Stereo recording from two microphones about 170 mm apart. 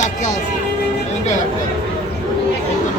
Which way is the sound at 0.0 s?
45° left (ahead or behind).